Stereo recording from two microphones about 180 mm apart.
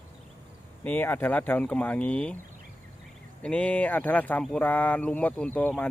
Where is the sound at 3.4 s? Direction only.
5° left (ahead or behind).